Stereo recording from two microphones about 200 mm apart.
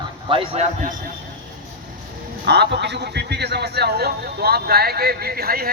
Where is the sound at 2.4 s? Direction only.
55° right (ahead or behind).